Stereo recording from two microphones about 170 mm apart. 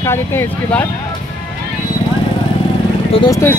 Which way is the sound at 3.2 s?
20° left (ahead or behind).